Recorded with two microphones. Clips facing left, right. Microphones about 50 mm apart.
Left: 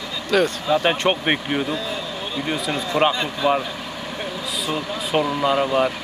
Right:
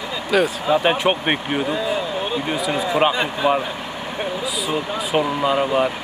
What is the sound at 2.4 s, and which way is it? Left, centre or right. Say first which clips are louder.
Speech: right 3 dB; centre.